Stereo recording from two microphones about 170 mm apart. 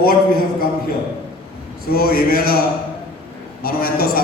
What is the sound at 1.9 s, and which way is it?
Speech, 60° left (ahead or behind).